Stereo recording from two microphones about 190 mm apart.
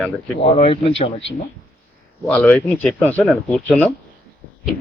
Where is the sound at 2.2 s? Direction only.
5° left (ahead or behind).